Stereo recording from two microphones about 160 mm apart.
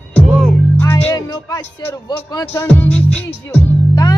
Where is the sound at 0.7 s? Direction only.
20° left (ahead or behind).